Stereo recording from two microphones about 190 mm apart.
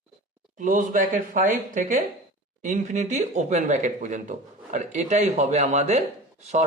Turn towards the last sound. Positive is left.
turn(degrees=-35)  # may be behind; listen again after turning